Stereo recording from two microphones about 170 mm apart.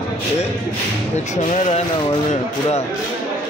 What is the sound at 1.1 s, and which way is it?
Speech, 45° left (ahead or behind).